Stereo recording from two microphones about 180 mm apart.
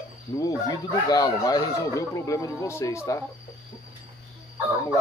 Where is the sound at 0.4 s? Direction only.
20° left (ahead or behind).